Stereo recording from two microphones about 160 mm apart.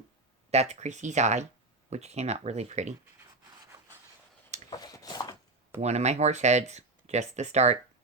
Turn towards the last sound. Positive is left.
turn(degrees=-45)  # may be behind; listen again after turning